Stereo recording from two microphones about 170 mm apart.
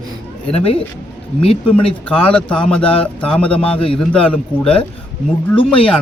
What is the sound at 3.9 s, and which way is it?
Speech, 5° left (ahead or behind).